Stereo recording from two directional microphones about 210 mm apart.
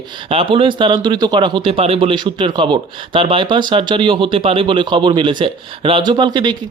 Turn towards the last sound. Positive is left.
turn(degrees=-20)  # may be behind; listen again after turning